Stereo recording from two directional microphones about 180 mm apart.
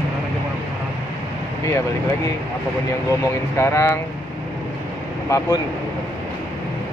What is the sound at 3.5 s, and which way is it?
Speech, 15° left (ahead or behind).